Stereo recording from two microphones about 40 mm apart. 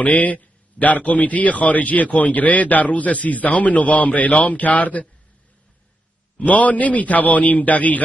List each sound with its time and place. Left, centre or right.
0.0 s a man's voice: left
6.4 s a man's voice: left